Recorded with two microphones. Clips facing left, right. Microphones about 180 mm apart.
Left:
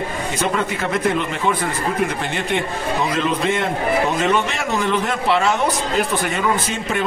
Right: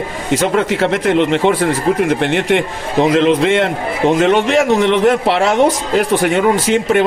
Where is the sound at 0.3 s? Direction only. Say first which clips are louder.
Right 9 dB; 90° right.